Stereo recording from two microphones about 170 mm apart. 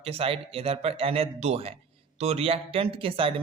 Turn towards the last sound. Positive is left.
turn(degrees=-30)  # may be behind; listen again after turning